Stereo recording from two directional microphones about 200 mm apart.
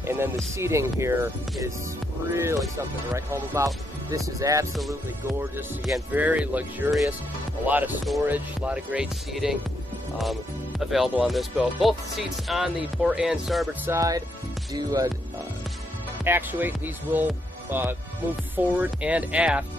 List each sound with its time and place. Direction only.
0.0 s music: 10° right (ahead or behind)
0.6 s speech: 15° right (ahead or behind)
10.8 s speech: centre (ahead or behind)
13.8 s speech: 15° right (ahead or behind)
16.3 s speech: 10° right (ahead or behind)